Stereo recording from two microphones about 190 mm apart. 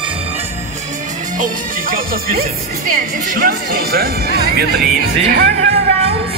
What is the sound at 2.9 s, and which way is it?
Speech, 50° right (ahead or behind).